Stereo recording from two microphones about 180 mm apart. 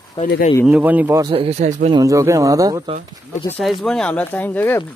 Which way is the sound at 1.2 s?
30° right (ahead or behind).